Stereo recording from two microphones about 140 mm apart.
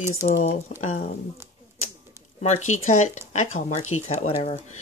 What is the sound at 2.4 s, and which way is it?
Speech, 55° left (ahead or behind).